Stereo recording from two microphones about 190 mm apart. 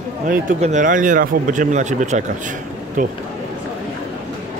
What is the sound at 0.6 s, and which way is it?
Speech, 40° right (ahead or behind).